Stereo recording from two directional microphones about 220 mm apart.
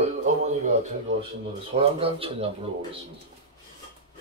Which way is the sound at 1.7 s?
25° right (ahead or behind).